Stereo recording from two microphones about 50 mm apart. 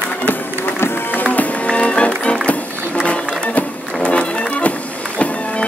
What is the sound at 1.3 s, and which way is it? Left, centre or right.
Music, left.